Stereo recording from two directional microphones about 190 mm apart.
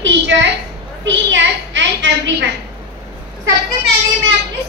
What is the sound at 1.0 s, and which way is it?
A woman's voice, 75° right (ahead or behind).